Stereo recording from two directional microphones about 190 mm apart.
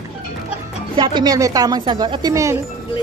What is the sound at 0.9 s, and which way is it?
Speech, 25° right (ahead or behind).